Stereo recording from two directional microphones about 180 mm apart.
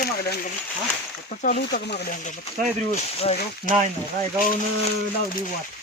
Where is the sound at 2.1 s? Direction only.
45° left (ahead or behind).